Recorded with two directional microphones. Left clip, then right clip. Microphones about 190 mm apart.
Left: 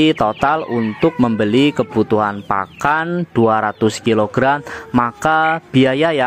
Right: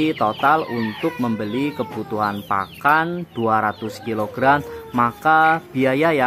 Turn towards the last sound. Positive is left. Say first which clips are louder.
# left 3 dB
turn(degrees=35)  # may be behind; listen again after turning